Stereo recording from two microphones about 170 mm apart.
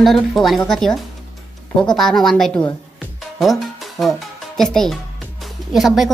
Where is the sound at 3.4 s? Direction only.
Centre (ahead or behind).